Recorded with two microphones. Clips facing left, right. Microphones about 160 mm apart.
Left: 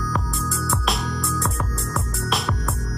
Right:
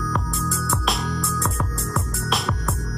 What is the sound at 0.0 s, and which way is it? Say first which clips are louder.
Music: even; centre (ahead or behind).